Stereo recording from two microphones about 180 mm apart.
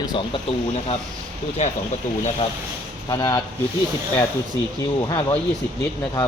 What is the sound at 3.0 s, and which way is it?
Speech, 20° left (ahead or behind).